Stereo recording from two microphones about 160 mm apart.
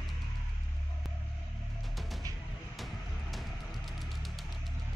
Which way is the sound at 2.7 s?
Centre (ahead or behind).